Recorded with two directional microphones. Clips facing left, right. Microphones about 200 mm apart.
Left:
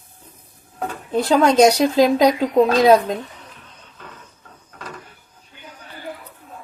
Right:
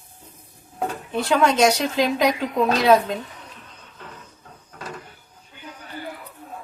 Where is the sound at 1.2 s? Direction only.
35° left (ahead or behind).